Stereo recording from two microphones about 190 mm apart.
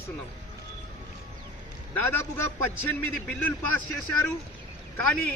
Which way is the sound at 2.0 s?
10° left (ahead or behind).